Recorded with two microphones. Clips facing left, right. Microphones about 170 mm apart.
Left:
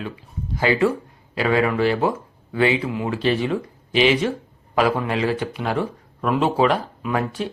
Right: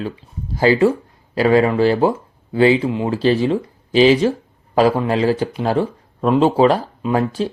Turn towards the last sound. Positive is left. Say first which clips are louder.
# right 5 dB
turn(degrees=-30)  # may be behind; listen again after turning